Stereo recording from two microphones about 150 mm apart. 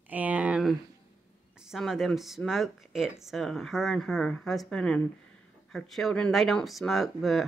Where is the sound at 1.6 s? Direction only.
Centre (ahead or behind).